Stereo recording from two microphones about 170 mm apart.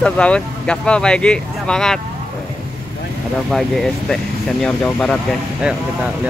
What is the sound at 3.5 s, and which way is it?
Speech, centre (ahead or behind).